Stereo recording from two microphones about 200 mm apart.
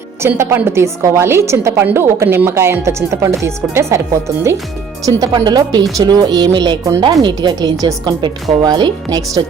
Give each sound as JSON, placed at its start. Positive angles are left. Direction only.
{"t": 0.2, "sound": "a woman's voice", "side_deg": -10}
{"t": 5.0, "sound": "speech", "side_deg": -20}